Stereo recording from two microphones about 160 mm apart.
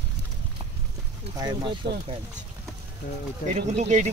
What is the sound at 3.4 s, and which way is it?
Speech, 45° right (ahead or behind).